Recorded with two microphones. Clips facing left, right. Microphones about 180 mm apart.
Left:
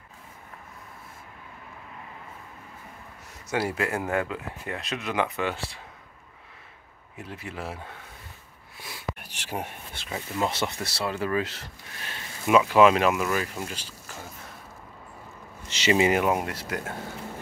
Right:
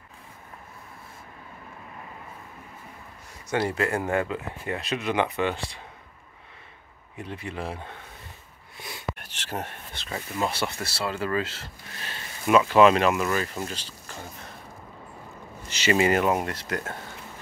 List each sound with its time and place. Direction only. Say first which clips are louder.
3.4 s speech: right 2 dB; 5° left (ahead or behind)
7.2 s speech: right 3 dB; 5° left (ahead or behind)
8.7 s a sound: right 1 dB; centre (ahead or behind)
10.5 s speech: even; 20° left (ahead or behind)
15.7 s speech: even; 20° left (ahead or behind)